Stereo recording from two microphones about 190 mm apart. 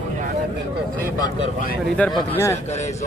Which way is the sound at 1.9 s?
5° left (ahead or behind).